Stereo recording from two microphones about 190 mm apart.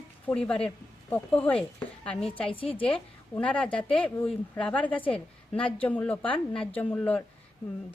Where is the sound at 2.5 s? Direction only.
30° left (ahead or behind).